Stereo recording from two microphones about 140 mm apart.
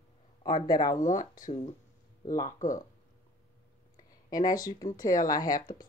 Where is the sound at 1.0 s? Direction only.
65° left (ahead or behind).